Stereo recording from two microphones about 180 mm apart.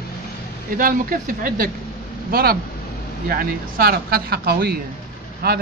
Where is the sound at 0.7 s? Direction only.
50° right (ahead or behind).